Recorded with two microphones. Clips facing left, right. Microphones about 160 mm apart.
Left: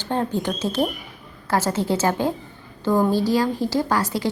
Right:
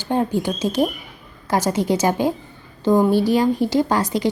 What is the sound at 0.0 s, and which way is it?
A woman's voice, 10° right (ahead or behind).